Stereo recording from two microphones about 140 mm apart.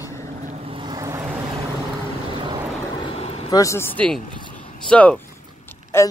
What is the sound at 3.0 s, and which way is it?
Vehicle, 45° left (ahead or behind).